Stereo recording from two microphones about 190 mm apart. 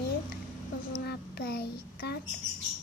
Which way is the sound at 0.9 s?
60° left (ahead or behind).